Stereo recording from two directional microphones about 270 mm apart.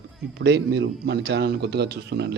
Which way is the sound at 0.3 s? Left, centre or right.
Right.